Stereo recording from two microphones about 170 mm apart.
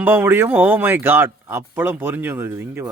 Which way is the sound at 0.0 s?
10° right (ahead or behind).